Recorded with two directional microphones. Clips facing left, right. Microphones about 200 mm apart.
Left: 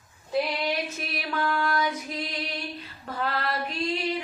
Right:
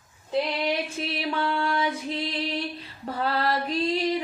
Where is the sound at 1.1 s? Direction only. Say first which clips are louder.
Right 2 dB; 30° right (ahead or behind).